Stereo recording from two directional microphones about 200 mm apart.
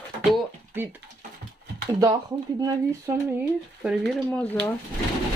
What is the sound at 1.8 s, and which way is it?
Speech, 15° right (ahead or behind).